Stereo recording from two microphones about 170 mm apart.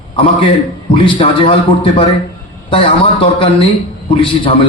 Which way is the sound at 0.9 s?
30° left (ahead or behind).